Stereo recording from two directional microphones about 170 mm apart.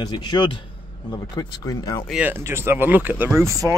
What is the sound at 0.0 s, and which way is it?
Speech, 25° left (ahead or behind).